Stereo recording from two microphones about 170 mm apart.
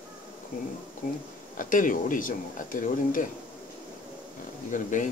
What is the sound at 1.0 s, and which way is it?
Speech, 50° left (ahead or behind).